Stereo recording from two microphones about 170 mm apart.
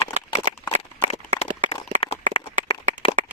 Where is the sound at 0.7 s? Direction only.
45° right (ahead or behind).